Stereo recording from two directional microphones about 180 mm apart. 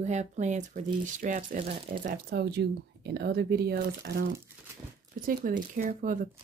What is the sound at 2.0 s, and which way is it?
Speech, 60° right (ahead or behind).